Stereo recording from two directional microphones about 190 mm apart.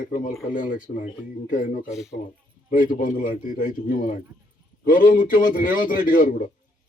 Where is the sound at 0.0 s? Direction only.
45° left (ahead or behind).